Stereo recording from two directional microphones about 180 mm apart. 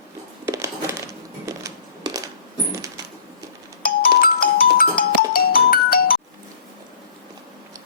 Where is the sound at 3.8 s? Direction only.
55° left (ahead or behind).